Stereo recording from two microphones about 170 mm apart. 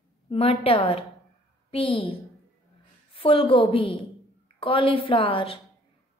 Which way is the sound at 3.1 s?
30° left (ahead or behind).